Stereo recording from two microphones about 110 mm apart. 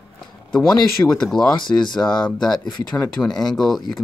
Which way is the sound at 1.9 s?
5° left (ahead or behind).